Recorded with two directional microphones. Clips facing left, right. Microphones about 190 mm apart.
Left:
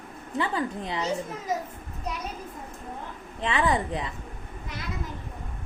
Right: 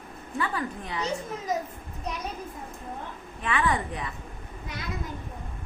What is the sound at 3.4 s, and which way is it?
Speech, 25° left (ahead or behind).